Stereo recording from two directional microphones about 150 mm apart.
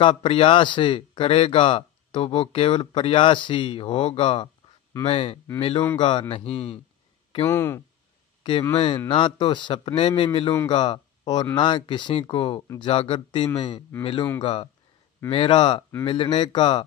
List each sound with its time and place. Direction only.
0.0 s speech: 35° left (ahead or behind)
7.4 s speech: 15° left (ahead or behind)
8.7 s speech: 40° left (ahead or behind)
12.9 s speech: 40° left (ahead or behind)